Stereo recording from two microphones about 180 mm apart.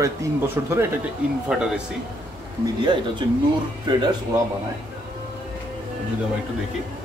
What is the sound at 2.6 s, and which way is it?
Speech, 25° right (ahead or behind).